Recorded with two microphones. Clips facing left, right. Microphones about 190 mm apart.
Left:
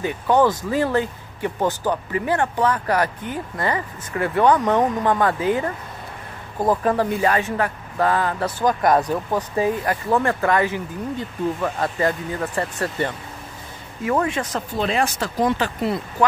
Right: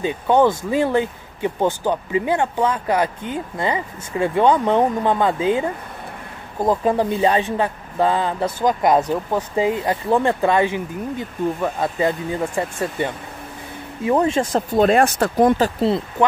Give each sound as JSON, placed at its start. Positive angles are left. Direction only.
{"t": 0.0, "sound": "speech", "side_deg": -20}
{"t": 6.7, "sound": "speech", "side_deg": -20}
{"t": 14.8, "sound": "speech", "side_deg": -50}
{"t": 15.8, "sound": "speech", "side_deg": -25}